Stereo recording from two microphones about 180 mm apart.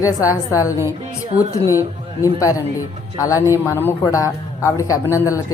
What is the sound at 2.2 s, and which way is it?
A woman's voice, 20° left (ahead or behind).